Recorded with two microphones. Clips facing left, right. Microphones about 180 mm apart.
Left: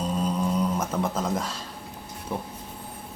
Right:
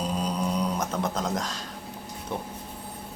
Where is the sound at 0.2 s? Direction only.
Centre (ahead or behind).